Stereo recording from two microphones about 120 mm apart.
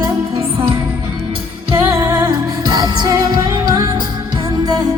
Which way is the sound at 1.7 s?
30° right (ahead or behind).